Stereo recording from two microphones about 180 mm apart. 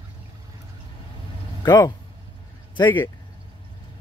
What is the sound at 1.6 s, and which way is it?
Speech, 20° left (ahead or behind).